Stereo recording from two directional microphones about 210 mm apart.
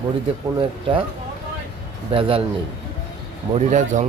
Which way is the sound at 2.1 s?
25° right (ahead or behind).